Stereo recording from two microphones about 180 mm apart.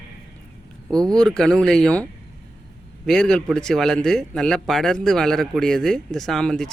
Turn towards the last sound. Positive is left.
turn(degrees=5)  # may be behind; listen again after turning